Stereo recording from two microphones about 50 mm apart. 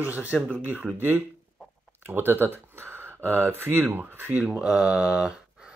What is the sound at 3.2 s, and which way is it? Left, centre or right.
Speech, right.